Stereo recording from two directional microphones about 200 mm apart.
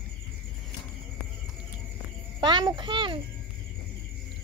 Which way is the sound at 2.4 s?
20° right (ahead or behind).